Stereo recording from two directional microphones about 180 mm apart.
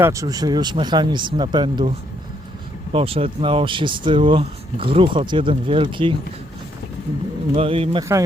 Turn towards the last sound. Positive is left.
turn(degrees=-30)  # may be behind; listen again after turning